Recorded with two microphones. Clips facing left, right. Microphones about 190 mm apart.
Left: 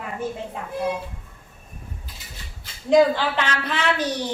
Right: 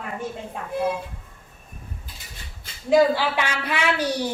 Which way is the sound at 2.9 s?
10° right (ahead or behind).